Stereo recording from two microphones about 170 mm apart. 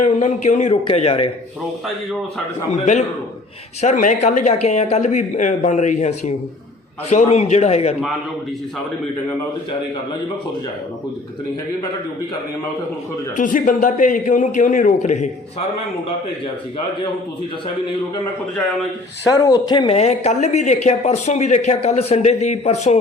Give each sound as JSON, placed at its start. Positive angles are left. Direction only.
{"t": 0.0, "sound": "speech", "side_deg": 40}
{"t": 2.7, "sound": "speech", "side_deg": 45}
{"t": 13.3, "sound": "speech", "side_deg": 50}
{"t": 19.2, "sound": "speech", "side_deg": 20}